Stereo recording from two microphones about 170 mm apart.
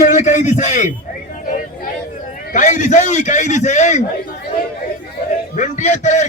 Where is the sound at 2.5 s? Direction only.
45° left (ahead or behind).